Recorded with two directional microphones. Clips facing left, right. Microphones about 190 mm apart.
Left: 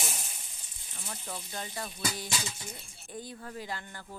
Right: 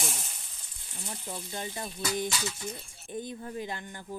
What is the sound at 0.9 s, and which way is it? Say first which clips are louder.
Speech: right 2 dB; 15° right (ahead or behind).